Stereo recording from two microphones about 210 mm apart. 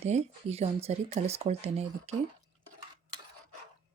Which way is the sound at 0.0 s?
30° right (ahead or behind).